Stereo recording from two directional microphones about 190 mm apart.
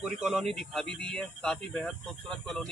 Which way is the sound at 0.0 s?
Centre (ahead or behind).